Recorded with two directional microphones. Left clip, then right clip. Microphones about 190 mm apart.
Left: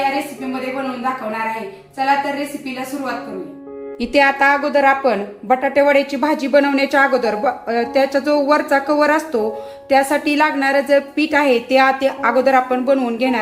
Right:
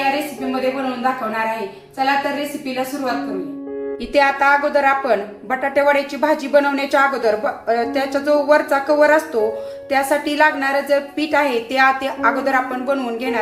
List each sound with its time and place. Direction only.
4.0 s a woman's voice: 40° left (ahead or behind)